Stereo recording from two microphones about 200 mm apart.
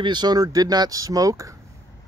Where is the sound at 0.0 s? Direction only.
20° right (ahead or behind).